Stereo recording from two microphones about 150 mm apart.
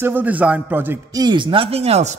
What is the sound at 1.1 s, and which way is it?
Speech, 30° right (ahead or behind).